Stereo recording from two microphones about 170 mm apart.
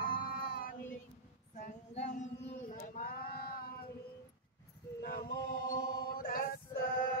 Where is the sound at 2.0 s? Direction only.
45° left (ahead or behind).